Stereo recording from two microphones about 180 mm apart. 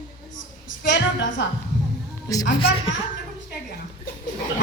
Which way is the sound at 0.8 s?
85° left.